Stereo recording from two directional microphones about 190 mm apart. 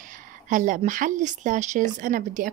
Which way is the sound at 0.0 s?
40° right (ahead or behind).